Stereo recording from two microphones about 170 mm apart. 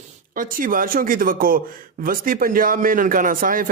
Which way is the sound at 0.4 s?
55° right (ahead or behind).